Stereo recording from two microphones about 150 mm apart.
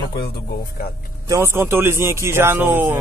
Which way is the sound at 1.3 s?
15° right (ahead or behind).